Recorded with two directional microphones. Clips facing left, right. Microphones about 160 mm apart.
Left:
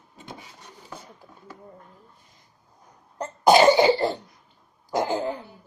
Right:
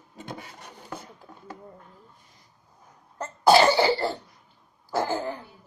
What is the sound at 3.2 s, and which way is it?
Cough, 15° left (ahead or behind).